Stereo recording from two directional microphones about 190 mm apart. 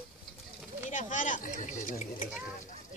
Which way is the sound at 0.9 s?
40° left (ahead or behind).